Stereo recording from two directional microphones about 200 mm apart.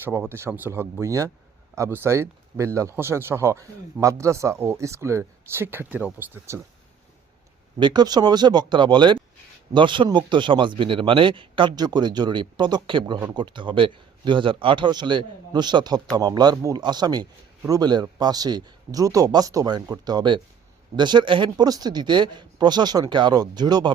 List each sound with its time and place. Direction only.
0.0 s speech: 10° right (ahead or behind)
7.8 s a man's voice: 20° right (ahead or behind)